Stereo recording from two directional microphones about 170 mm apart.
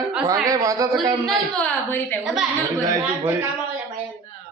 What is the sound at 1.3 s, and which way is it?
Speech, 5° left (ahead or behind).